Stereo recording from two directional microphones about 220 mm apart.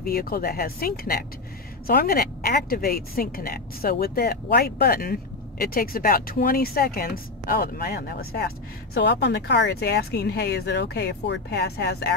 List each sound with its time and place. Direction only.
0.0 s speech: 45° left (ahead or behind)